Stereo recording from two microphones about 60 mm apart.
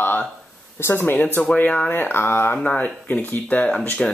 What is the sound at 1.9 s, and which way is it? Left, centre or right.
Speech, left.